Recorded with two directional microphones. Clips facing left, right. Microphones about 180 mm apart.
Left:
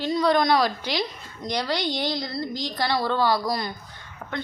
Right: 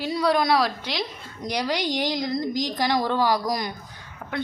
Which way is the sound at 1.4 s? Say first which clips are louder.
Right 1 dB; 10° right (ahead or behind).